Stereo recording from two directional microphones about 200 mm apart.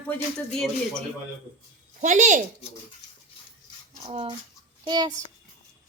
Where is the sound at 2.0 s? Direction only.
40° right (ahead or behind).